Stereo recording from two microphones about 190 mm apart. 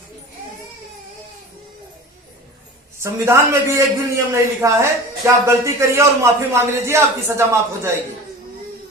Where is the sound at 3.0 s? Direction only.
15° right (ahead or behind).